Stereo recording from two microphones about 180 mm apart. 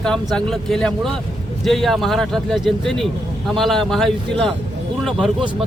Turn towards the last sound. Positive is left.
turn(degrees=0)  # may be behind; listen again after turning